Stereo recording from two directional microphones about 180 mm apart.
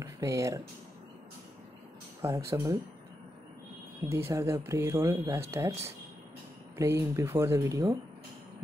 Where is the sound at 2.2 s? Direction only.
15° right (ahead or behind).